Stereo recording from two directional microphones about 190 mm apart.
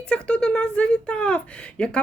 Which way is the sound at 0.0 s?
5° left (ahead or behind).